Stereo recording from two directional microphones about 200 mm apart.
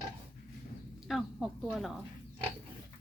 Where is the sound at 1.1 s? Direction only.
Centre (ahead or behind).